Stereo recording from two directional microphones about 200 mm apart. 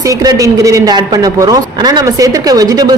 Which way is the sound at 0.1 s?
15° right (ahead or behind).